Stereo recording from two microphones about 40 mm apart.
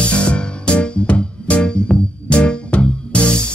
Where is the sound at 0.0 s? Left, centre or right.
Left.